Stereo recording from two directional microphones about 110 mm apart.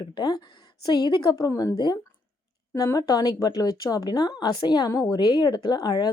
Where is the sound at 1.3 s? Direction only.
30° left (ahead or behind).